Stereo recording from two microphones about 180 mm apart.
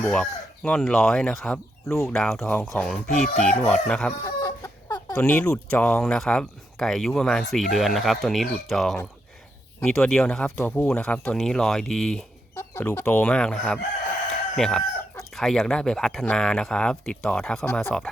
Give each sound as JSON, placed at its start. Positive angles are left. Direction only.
{"t": 0.0, "sound": "speech", "side_deg": 5}
{"t": 1.9, "sound": "speech", "side_deg": 15}
{"t": 2.1, "sound": "speech", "side_deg": 0}
{"t": 4.2, "sound": "chicken", "side_deg": 15}
{"t": 5.1, "sound": "speech", "side_deg": 10}
{"t": 12.5, "sound": "speech", "side_deg": 10}